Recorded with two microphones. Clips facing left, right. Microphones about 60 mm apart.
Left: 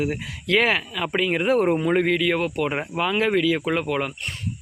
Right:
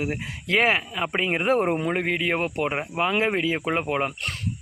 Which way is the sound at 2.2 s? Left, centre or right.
Right.